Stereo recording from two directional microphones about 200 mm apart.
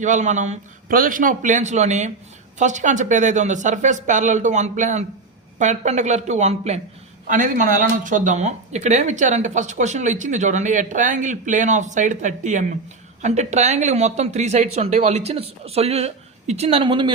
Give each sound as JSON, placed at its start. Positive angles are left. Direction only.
{"t": 0.0, "sound": "speech", "side_deg": -40}